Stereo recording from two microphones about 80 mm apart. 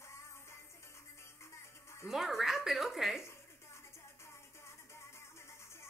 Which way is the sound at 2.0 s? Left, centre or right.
Centre.